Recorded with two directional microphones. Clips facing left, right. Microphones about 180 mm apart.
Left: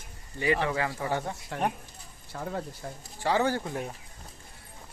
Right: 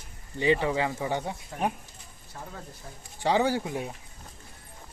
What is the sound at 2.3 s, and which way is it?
Speech, 90° left.